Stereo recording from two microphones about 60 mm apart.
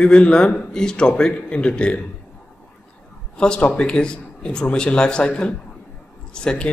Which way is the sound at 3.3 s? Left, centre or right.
Centre.